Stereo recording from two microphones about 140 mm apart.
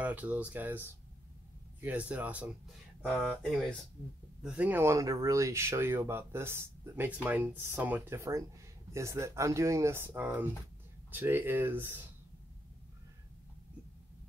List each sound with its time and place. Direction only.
0.0 s speech: 10° right (ahead or behind)
3.1 s speech: centre (ahead or behind); by 12.0 s 15° right (ahead or behind)